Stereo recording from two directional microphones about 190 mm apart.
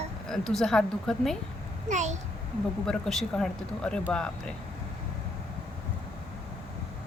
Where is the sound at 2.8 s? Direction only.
5° left (ahead or behind).